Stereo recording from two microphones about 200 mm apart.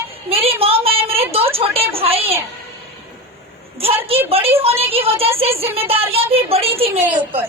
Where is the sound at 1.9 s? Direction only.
30° right (ahead or behind).